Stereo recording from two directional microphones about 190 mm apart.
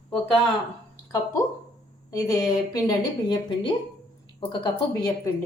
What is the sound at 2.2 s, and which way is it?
A woman's voice, 20° left (ahead or behind).